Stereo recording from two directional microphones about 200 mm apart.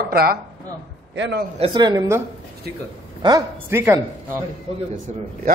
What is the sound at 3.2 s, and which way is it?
Speech, 15° right (ahead or behind).